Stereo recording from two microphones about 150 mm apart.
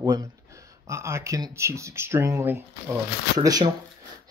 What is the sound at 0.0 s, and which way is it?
Speech, 25° right (ahead or behind).